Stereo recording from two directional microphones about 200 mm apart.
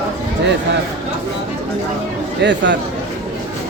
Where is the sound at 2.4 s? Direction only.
60° right (ahead or behind).